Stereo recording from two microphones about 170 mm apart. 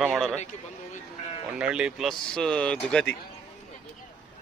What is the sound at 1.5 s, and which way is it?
A man's voice, 5° right (ahead or behind).